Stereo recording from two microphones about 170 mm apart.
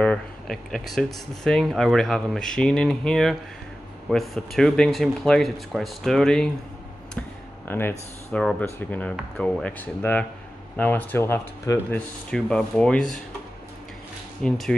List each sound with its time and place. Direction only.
0.0 s speech: 5° left (ahead or behind)
7.6 s speech: 15° left (ahead or behind)
12.3 s speech: 5° left (ahead or behind)
14.4 s speech: 5° left (ahead or behind)